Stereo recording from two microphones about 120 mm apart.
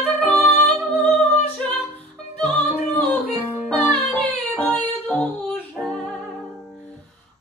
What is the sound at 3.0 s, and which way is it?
Music, 15° left (ahead or behind).